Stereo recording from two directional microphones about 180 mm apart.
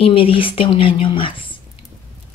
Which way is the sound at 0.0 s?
30° left (ahead or behind).